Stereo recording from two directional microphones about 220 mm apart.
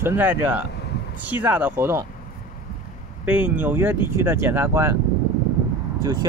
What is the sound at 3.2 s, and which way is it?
Speech, 5° right (ahead or behind).